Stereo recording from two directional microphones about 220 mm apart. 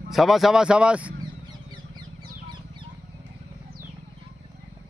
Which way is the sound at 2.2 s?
20° right (ahead or behind).